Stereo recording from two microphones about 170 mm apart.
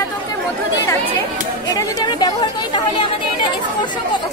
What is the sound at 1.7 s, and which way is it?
Speech, 25° left (ahead or behind).